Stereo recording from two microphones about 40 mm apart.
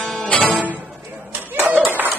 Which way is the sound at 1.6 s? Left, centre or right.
Right.